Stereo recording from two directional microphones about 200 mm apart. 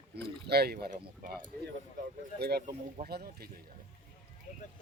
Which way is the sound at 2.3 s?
55° right (ahead or behind).